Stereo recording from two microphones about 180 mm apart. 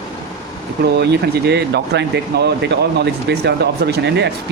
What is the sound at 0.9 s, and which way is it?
Speech, 65° right (ahead or behind).